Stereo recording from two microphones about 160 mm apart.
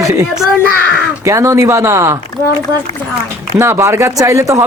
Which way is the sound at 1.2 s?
20° right (ahead or behind).